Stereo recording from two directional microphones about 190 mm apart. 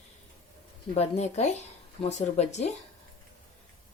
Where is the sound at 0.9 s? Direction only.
35° left (ahead or behind).